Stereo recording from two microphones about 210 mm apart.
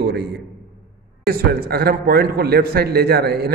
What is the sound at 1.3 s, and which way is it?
A man's voice, 45° right (ahead or behind).